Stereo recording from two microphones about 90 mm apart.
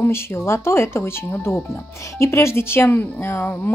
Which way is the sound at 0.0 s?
25° left (ahead or behind).